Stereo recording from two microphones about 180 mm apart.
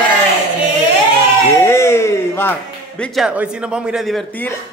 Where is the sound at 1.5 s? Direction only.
15° left (ahead or behind).